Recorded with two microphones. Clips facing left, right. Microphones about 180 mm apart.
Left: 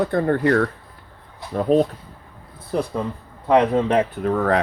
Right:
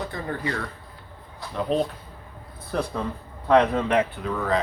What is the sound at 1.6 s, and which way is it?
Speech, 45° left (ahead or behind).